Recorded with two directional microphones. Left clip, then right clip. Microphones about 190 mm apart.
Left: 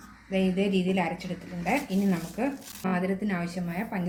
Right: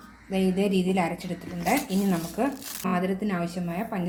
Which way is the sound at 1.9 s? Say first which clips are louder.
Right 3 dB; 35° right (ahead or behind).